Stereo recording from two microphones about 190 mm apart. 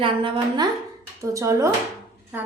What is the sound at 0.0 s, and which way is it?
A woman's voice, 25° right (ahead or behind).